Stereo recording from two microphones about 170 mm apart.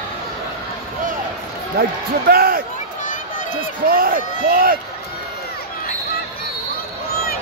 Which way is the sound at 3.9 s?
60° right (ahead or behind).